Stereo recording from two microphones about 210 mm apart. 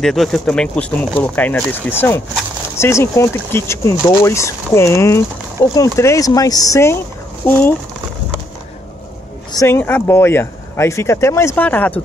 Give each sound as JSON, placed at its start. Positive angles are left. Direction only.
{"t": 0.0, "sound": "speech", "side_deg": 0}
{"t": 9.5, "sound": "speech", "side_deg": 15}